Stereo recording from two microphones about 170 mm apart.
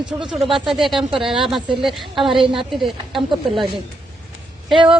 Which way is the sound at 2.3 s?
30° right (ahead or behind).